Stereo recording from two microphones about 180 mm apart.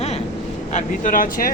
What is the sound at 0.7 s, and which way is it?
Speech, 50° left (ahead or behind).